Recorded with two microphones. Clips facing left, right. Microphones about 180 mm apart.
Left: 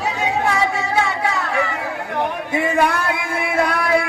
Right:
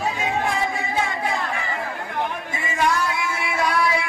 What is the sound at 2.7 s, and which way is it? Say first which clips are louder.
Music: left 2 dB; 60° left (ahead or behind).